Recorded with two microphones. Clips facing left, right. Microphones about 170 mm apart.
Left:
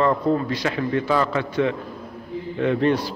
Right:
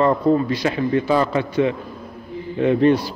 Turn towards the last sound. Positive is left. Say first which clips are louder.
# right 4 dB
turn(degrees=-15)  # may be behind; listen again after turning